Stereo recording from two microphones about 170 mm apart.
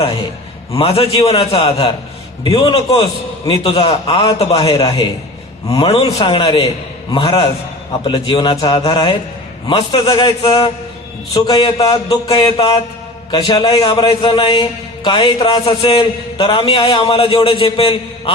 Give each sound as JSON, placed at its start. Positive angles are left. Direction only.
{"t": 0.0, "sound": "a man's voice", "side_deg": 30}